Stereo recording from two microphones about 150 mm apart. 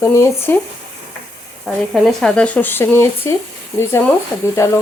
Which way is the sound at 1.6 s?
Centre (ahead or behind).